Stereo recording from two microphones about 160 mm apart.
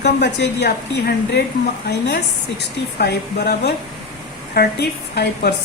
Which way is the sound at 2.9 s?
85° left.